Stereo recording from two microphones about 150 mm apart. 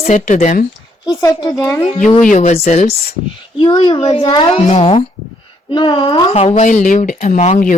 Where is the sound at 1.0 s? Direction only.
25° left (ahead or behind).